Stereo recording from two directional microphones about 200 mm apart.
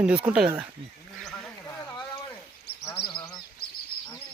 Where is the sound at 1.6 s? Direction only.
15° left (ahead or behind).